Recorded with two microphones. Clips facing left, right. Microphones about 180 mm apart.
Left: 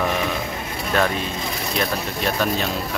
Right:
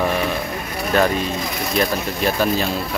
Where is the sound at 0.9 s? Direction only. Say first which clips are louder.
Right 4 dB; centre (ahead or behind).